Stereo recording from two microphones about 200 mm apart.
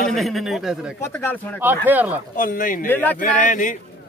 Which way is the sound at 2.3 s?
45° left (ahead or behind).